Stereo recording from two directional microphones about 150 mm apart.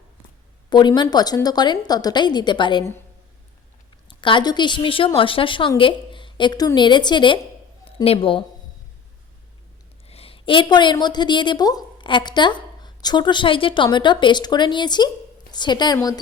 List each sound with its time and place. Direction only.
0.7 s a woman's voice: 30° left (ahead or behind)
4.1 s a woman's voice: 35° left (ahead or behind)
10.1 s a woman's voice: 40° left (ahead or behind)